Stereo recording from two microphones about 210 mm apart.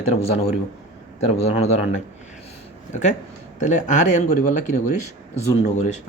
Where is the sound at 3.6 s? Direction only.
35° left (ahead or behind).